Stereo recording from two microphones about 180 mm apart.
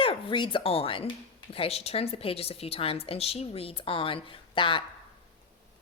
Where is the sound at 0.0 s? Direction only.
30° left (ahead or behind).